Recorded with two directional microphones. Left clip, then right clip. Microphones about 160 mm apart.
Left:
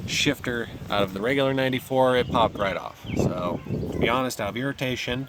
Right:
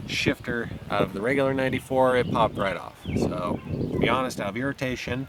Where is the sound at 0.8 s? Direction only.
15° right (ahead or behind).